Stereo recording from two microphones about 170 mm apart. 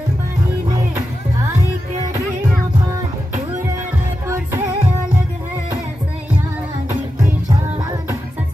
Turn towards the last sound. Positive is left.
turn(degrees=-25)  # may be behind; listen again after turning